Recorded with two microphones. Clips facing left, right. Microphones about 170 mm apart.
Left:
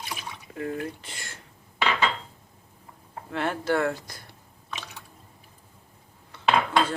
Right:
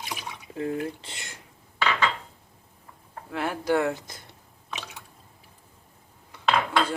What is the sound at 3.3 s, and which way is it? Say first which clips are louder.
Speech: even; 5° right (ahead or behind).